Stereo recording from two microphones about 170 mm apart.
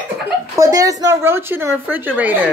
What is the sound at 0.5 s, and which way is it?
A woman's voice, 20° right (ahead or behind).